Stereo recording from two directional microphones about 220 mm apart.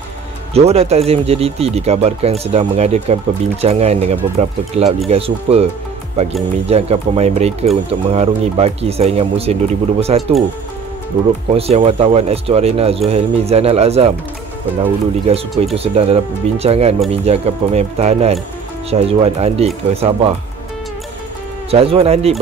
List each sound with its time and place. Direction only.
0.6 s speech: 30° right (ahead or behind)
11.5 s speech: 30° right (ahead or behind)
21.6 s speech: 25° right (ahead or behind)